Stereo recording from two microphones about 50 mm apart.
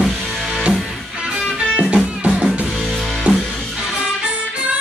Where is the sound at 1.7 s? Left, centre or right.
Right.